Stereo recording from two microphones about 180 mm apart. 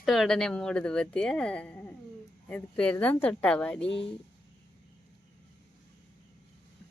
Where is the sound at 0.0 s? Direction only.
Centre (ahead or behind).